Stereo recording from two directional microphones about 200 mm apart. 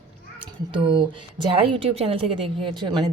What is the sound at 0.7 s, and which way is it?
A woman's voice, 25° right (ahead or behind).